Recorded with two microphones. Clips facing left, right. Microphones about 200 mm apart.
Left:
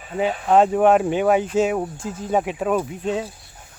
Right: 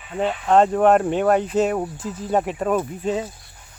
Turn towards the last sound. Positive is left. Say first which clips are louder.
# even
turn(degrees=0)  # may be behind; listen again after turning